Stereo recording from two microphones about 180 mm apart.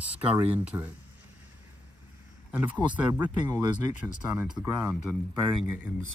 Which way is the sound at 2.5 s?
10° right (ahead or behind).